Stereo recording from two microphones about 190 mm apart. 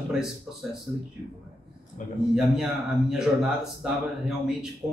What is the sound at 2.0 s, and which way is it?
Speech, 40° left (ahead or behind).